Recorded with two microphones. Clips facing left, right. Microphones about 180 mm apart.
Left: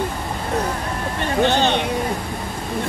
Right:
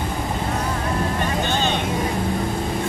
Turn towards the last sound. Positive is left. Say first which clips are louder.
# left 5 dB
turn(degrees=70)  # may be behind; listen again after turning